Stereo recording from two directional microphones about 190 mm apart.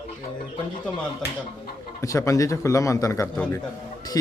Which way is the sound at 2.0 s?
15° left (ahead or behind).